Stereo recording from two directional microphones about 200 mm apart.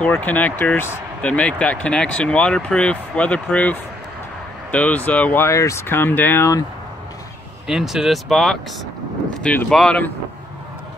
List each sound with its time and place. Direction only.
0.0 s speech: 10° left (ahead or behind)
7.6 s speech: centre (ahead or behind)